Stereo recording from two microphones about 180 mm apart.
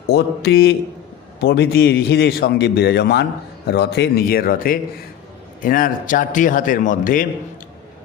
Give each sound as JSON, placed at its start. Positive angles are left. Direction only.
{"t": 0.1, "sound": "a man's voice", "side_deg": 65}